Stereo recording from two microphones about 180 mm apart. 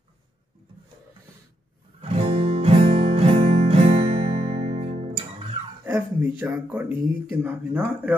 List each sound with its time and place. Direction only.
2.0 s music: 35° right (ahead or behind)
5.9 s speech: 15° right (ahead or behind)